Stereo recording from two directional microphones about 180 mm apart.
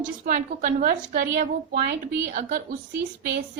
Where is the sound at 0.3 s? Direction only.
45° right (ahead or behind).